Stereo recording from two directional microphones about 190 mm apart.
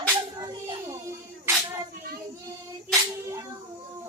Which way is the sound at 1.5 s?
15° right (ahead or behind).